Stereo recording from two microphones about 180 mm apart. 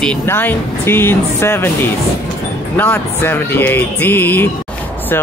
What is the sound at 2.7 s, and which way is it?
Speech, 10° left (ahead or behind).